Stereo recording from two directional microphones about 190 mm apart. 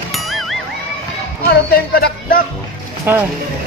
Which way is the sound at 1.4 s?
55° left (ahead or behind).